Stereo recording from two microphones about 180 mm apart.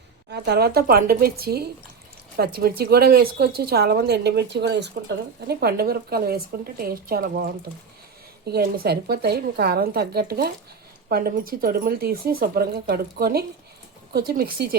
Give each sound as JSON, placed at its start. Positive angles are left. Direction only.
{"t": 0.3, "sound": "speech", "side_deg": -65}
{"t": 8.4, "sound": "speech", "side_deg": -60}